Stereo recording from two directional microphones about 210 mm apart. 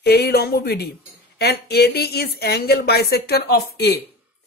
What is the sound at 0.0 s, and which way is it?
Speech, 50° left (ahead or behind).